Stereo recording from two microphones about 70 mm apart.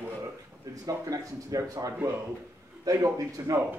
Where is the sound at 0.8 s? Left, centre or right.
Right.